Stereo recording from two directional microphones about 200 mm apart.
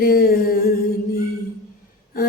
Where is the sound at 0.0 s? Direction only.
45° left (ahead or behind).